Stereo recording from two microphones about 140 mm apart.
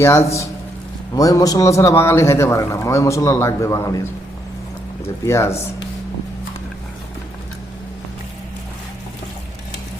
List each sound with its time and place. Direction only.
0.0 s a man's voice: 20° left (ahead or behind)
5.2 s a man's voice: 20° left (ahead or behind)